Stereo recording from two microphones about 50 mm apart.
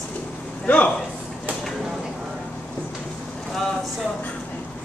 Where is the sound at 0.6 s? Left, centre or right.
Left.